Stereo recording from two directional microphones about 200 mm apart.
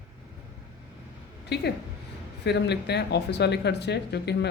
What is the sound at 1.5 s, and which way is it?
Speech, 55° left (ahead or behind).